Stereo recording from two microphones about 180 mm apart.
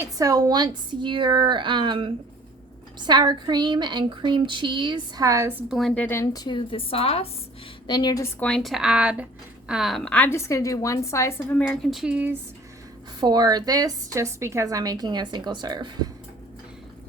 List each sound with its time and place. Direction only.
0.0 s a woman's voice: 20° right (ahead or behind)
3.1 s a woman's voice: 25° right (ahead or behind)
5.7 s a woman's voice: 5° left (ahead or behind); by 7.3 s 35° left (ahead or behind)
7.9 s a woman's voice: 20° left (ahead or behind); by 12.4 s 10° right (ahead or behind)
13.1 s a woman's voice: 25° right (ahead or behind)